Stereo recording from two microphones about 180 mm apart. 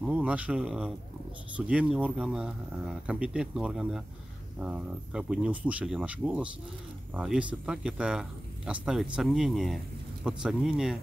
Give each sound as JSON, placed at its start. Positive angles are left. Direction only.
{"t": 0.0, "sound": "speech", "side_deg": -5}